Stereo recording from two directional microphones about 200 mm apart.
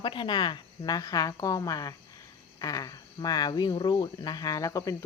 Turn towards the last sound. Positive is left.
turn(degrees=15)  # may be behind; listen again after turning